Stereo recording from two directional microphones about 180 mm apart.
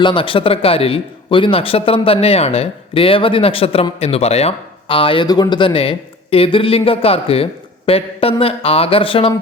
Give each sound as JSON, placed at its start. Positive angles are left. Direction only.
{"t": 0.0, "sound": "a man's voice", "side_deg": 30}